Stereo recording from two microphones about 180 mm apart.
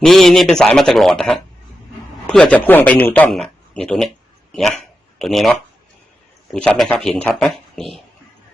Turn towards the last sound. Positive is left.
turn(degrees=0)  # may be behind; listen again after turning